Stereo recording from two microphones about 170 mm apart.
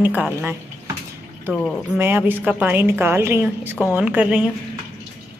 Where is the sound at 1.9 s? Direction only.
15° right (ahead or behind).